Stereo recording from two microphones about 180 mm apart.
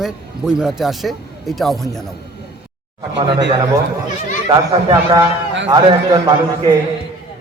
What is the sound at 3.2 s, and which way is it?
Speech, 25° right (ahead or behind).